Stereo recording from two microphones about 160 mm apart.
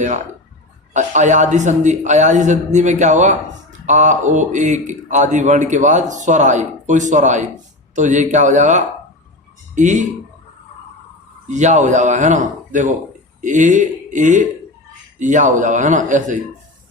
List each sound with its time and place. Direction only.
0.9 s speech: 50° right (ahead or behind)
11.4 s speech: 50° right (ahead or behind)